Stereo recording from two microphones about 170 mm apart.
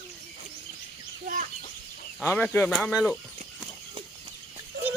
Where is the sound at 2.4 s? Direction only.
10° left (ahead or behind).